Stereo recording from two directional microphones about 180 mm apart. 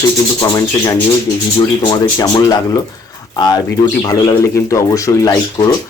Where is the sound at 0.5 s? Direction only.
20° left (ahead or behind).